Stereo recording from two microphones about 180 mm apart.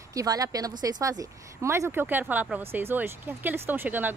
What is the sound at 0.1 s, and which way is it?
A woman's voice, 20° right (ahead or behind).